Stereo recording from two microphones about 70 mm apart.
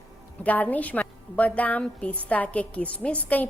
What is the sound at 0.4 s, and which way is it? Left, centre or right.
A woman's voice, left.